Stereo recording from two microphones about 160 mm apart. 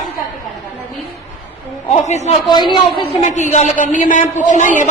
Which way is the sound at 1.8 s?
45° left (ahead or behind).